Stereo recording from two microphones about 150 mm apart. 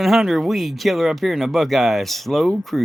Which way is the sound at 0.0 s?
Centre (ahead or behind).